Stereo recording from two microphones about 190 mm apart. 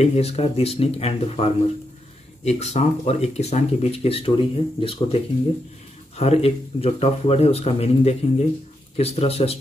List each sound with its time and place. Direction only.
0.0 s speech: 35° left (ahead or behind)